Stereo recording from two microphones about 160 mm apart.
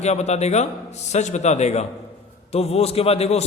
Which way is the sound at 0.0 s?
45° left (ahead or behind).